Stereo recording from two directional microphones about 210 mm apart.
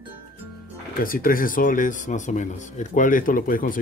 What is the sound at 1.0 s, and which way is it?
Speech, 45° left (ahead or behind).